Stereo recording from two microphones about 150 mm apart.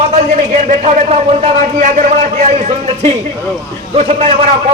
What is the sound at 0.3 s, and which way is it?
A man's voice, 50° right (ahead or behind).